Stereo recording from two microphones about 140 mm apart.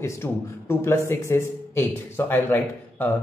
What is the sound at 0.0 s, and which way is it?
A man's voice, 20° left (ahead or behind).